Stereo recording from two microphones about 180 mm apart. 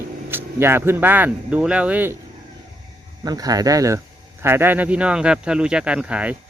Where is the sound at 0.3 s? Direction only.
10° right (ahead or behind).